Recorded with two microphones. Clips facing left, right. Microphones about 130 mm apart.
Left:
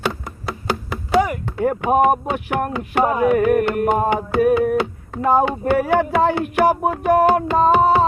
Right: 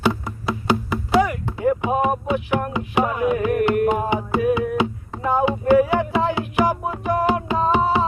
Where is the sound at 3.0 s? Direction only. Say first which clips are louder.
Left 8 dB; 40° left (ahead or behind).